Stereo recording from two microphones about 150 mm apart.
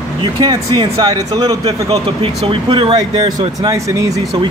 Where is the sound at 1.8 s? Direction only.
40° right (ahead or behind).